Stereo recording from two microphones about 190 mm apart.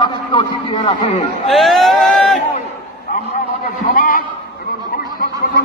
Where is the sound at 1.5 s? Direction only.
Centre (ahead or behind).